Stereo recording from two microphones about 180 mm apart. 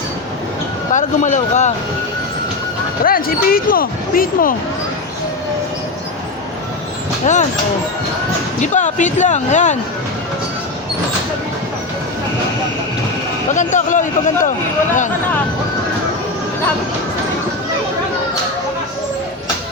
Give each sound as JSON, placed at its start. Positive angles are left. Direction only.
{"t": 0.9, "sound": "speech", "side_deg": 45}
{"t": 3.0, "sound": "speech", "side_deg": 55}
{"t": 7.3, "sound": "speech", "side_deg": 45}
{"t": 8.6, "sound": "speech", "side_deg": 45}
{"t": 13.6, "sound": "speech", "side_deg": 45}